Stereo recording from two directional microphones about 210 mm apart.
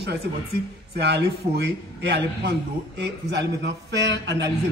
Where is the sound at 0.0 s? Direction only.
50° right (ahead or behind).